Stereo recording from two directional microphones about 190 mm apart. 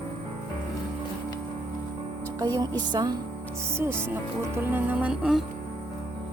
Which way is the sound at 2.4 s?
20° right (ahead or behind).